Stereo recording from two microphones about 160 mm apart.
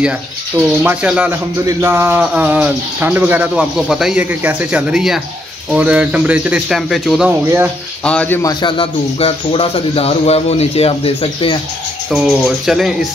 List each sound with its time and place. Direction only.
0.8 s speech: 10° right (ahead or behind)
7.2 s speech: 10° right (ahead or behind)
8.0 s a man's voice: 5° left (ahead or behind)
8.4 s speech: 25° left (ahead or behind)
12.1 s speech: centre (ahead or behind)